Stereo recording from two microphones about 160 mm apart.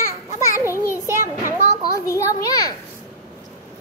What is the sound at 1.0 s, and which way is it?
Children playing, 20° left (ahead or behind).